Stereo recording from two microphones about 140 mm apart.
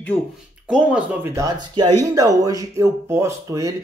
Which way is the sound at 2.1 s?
25° right (ahead or behind).